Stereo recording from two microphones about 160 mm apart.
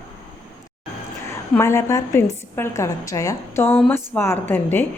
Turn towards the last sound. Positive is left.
turn(degrees=10)  # may be behind; listen again after turning